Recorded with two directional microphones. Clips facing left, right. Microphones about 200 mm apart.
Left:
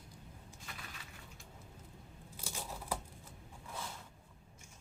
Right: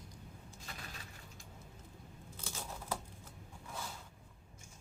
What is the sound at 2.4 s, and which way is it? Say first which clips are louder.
Scissors: left 1 dB; 10° left (ahead or behind).